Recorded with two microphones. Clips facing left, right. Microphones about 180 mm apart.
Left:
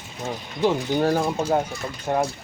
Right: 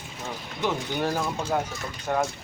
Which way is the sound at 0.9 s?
35° left (ahead or behind).